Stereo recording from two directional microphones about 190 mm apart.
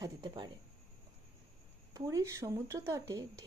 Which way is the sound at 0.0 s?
25° right (ahead or behind).